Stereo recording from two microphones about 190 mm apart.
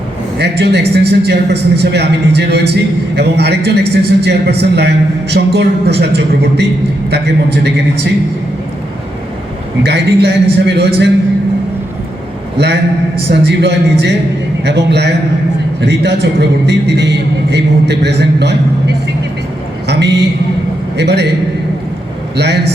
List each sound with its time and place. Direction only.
0.3 s a man's voice: 60° right (ahead or behind)
9.8 s a man's voice: 60° right (ahead or behind)
12.5 s a man's voice: 60° right (ahead or behind)
19.9 s a man's voice: 65° right (ahead or behind)